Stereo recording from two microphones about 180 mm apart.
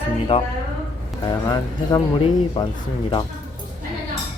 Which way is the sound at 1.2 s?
20° left (ahead or behind).